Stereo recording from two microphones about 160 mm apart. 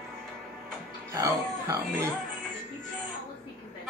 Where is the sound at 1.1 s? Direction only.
20° right (ahead or behind).